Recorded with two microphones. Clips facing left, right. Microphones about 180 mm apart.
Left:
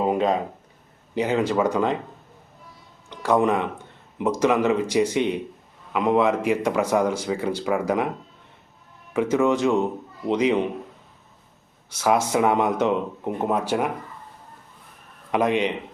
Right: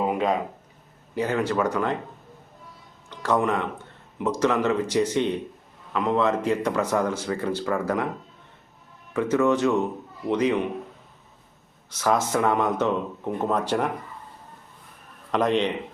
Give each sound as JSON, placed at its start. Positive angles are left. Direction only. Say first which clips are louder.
{"t": 0.1, "sound": "a sound", "louder": "left 2 dB", "side_deg": 25}
{"t": 1.1, "sound": "speech", "louder": "left 3 dB", "side_deg": 20}
{"t": 3.1, "sound": "a man's voice", "louder": "left 3 dB", "side_deg": 15}
{"t": 9.1, "sound": "a man's voice", "louder": "left 1 dB", "side_deg": 15}
{"t": 11.9, "sound": "a man's voice", "louder": "left 2 dB", "side_deg": 10}
{"t": 15.3, "sound": "a man's voice", "louder": "left 1 dB", "side_deg": 10}